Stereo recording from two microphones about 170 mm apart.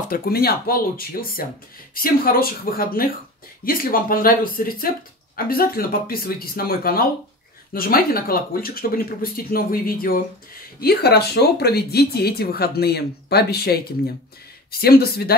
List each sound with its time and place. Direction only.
0.1 s speech: 65° left (ahead or behind)
10.8 s speech: 70° left (ahead or behind)